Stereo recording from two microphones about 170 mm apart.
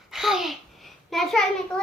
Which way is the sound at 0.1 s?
Centre (ahead or behind).